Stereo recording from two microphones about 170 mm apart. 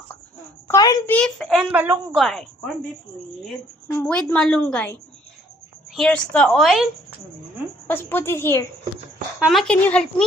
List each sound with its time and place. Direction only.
0.7 s a child's voice: 20° left (ahead or behind)
1.1 s a woman's voice: 5° left (ahead or behind)
1.7 s a woman's voice: 10° right (ahead or behind)
2.1 s a woman's voice: centre (ahead or behind)
3.9 s a woman's voice: 5° left (ahead or behind)
7.9 s a woman's voice: 15° left (ahead or behind)
9.4 s a woman's voice: centre (ahead or behind)